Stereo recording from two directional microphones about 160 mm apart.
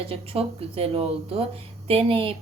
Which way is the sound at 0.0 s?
35° right (ahead or behind).